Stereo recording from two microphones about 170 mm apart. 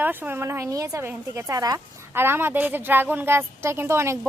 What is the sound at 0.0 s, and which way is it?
A woman's voice, 10° right (ahead or behind).